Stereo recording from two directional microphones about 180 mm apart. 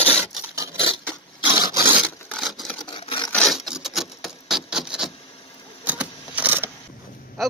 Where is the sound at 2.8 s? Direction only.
30° left (ahead or behind).